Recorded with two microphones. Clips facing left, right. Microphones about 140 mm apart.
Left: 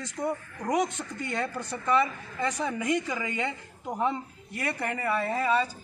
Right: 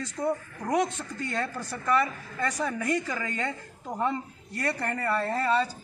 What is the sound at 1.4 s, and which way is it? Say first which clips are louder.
A woman's voice: even; 15° left (ahead or behind).